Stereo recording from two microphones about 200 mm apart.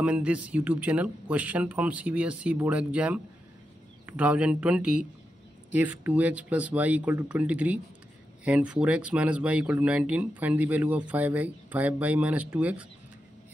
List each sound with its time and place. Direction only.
0.0 s speech: 5° right (ahead or behind)